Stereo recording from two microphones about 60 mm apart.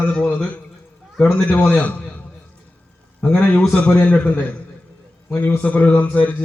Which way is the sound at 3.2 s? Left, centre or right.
Left.